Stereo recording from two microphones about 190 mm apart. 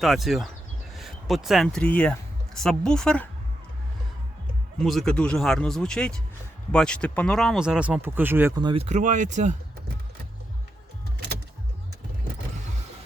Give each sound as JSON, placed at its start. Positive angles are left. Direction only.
{"t": 0.0, "sound": "speech", "side_deg": 0}
{"t": 4.8, "sound": "speech", "side_deg": 0}
{"t": 8.6, "sound": "speech", "side_deg": -30}